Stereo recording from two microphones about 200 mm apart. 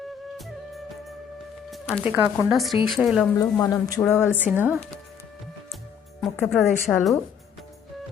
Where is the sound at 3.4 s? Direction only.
15° left (ahead or behind).